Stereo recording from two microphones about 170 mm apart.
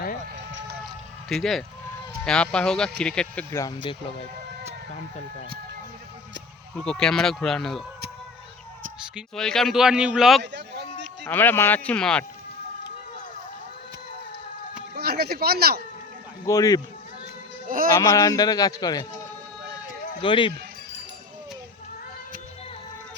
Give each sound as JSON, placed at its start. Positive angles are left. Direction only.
{"t": 0.3, "sound": "run", "side_deg": -90}
{"t": 1.3, "sound": "a man's voice", "side_deg": 0}
{"t": 3.5, "sound": "a man's voice", "side_deg": 20}
{"t": 6.7, "sound": "a man's voice", "side_deg": 5}
{"t": 9.1, "sound": "a man's voice", "side_deg": 5}
{"t": 10.4, "sound": "a sound", "side_deg": -90}
{"t": 11.3, "sound": "speech", "side_deg": 10}
{"t": 14.9, "sound": "speech", "side_deg": -65}
{"t": 16.5, "sound": "a man's voice", "side_deg": 20}
{"t": 17.9, "sound": "a man's voice", "side_deg": 20}
{"t": 20.2, "sound": "speech", "side_deg": 30}